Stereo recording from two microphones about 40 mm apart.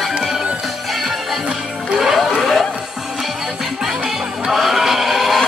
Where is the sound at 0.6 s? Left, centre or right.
Centre.